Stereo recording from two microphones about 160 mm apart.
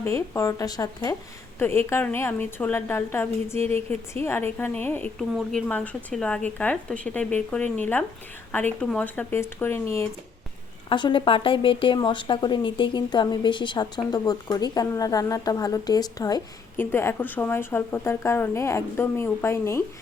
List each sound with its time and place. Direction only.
0.0 s a woman's voice: 20° left (ahead or behind)
10.8 s a woman's voice: 30° left (ahead or behind)